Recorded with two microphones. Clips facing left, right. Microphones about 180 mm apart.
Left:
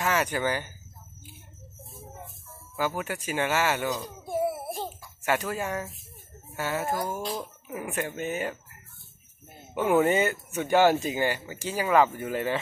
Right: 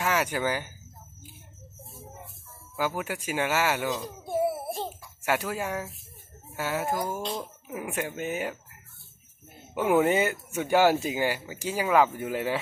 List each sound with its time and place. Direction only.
0.0 s speech: 10° right (ahead or behind)
2.7 s speech: 10° right (ahead or behind)
4.5 s babbling: centre (ahead or behind)
5.2 s speech: 10° right (ahead or behind)
7.2 s speech: centre (ahead or behind)
9.8 s speech: 10° right (ahead or behind)